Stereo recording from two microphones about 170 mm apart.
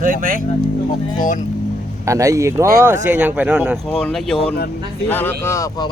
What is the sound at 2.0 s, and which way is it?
Speech, 20° right (ahead or behind).